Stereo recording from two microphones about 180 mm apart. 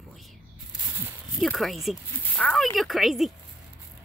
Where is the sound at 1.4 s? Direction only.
Centre (ahead or behind).